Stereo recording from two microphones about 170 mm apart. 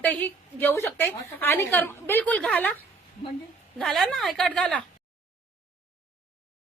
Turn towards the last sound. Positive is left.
turn(degrees=5)  # may be behind; listen again after turning